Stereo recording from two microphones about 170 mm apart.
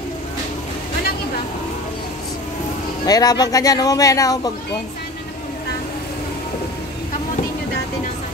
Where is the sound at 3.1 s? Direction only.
20° left (ahead or behind).